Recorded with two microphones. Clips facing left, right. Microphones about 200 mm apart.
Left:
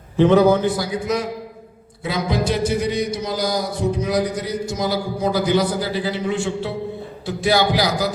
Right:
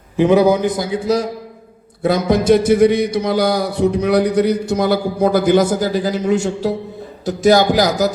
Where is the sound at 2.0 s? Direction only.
55° right (ahead or behind).